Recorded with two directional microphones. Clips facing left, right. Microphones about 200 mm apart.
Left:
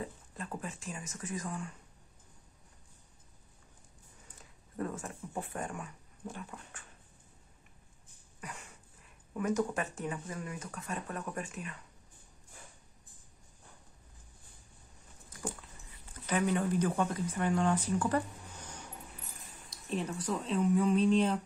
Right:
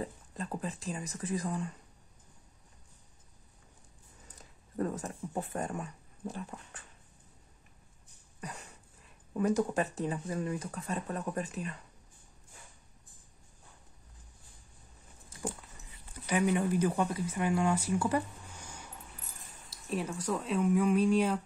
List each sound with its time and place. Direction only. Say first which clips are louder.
0.0 s speech: right 3 dB; 35° right (ahead or behind)
4.4 s speech: right 4 dB; 35° right (ahead or behind)
8.4 s dog: right 2 dB; 40° right (ahead or behind)
9.4 s speech: right 3 dB; 35° right (ahead or behind)
16.1 s speech: right 2 dB; 10° right (ahead or behind)